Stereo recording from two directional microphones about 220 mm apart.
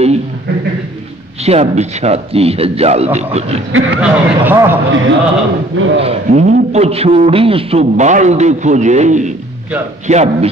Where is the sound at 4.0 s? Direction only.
10° right (ahead or behind).